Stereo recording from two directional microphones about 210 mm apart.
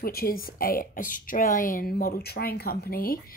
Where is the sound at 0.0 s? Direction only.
45° left (ahead or behind).